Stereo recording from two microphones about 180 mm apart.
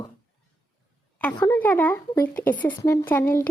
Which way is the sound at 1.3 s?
20° left (ahead or behind).